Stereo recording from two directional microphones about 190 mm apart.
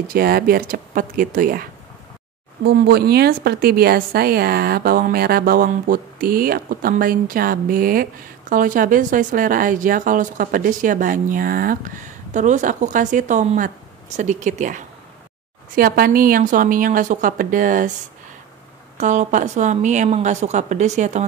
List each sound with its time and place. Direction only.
0.1 s speech: 55° right (ahead or behind)
18.9 s a woman's voice: 40° right (ahead or behind)